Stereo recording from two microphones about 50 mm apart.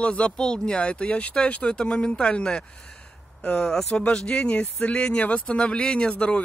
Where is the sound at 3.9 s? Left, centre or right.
Centre.